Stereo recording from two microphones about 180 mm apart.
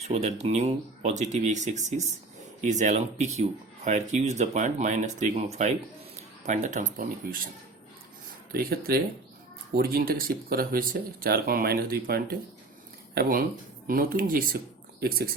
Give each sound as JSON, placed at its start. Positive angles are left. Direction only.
{"t": 0.0, "sound": "speech", "side_deg": -35}
{"t": 8.5, "sound": "speech", "side_deg": -60}